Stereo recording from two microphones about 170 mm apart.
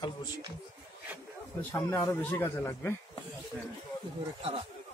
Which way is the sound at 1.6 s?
15° left (ahead or behind).